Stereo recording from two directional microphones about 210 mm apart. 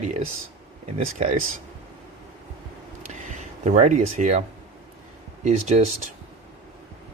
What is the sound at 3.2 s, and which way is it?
Speech, 35° right (ahead or behind).